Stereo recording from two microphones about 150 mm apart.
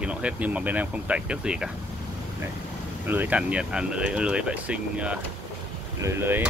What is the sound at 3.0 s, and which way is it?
Speech, 10° right (ahead or behind).